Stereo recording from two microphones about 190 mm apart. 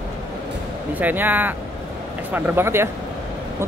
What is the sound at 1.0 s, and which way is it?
Speech, 10° right (ahead or behind).